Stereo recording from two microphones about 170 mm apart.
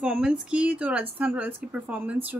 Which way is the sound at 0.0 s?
5° right (ahead or behind).